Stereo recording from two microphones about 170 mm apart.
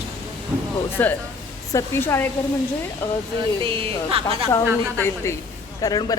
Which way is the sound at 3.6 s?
35° right (ahead or behind).